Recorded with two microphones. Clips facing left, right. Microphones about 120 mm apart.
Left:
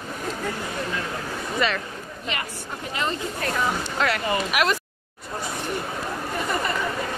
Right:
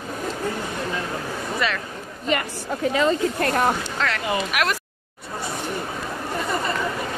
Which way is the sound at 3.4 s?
55° right (ahead or behind).